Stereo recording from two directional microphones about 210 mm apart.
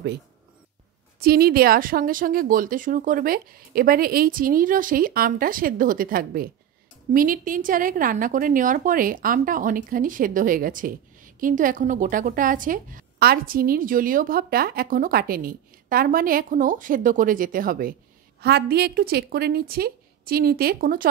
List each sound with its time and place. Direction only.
1.2 s a woman's voice: 45° right (ahead or behind)